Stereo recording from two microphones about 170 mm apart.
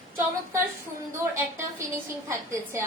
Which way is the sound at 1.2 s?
15° right (ahead or behind).